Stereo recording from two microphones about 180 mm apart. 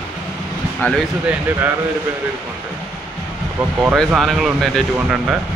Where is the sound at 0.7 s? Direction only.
5° left (ahead or behind).